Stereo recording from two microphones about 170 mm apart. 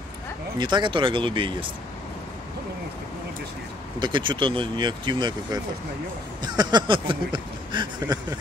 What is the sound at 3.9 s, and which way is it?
Speech, 25° right (ahead or behind).